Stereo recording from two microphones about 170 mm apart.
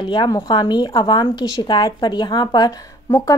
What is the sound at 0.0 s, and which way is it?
A woman's voice, 25° left (ahead or behind).